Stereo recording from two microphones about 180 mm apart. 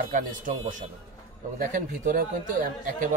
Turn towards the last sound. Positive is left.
turn(degrees=-45)  # may be behind; listen again after turning